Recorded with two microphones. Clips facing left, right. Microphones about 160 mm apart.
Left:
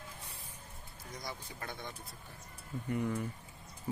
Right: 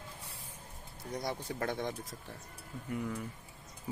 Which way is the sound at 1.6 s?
85° right.